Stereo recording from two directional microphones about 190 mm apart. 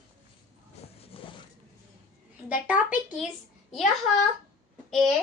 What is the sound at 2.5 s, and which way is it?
A woman's voice, 5° right (ahead or behind).